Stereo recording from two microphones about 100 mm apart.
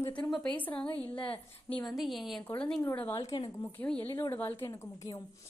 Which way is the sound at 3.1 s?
30° left (ahead or behind).